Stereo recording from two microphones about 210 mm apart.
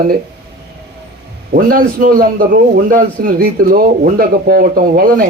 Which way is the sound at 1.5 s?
40° right (ahead or behind).